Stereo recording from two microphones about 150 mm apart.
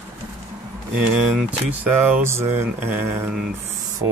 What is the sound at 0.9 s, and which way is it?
Speech, 10° right (ahead or behind).